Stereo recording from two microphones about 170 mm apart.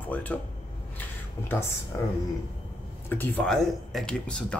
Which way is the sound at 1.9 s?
15° left (ahead or behind).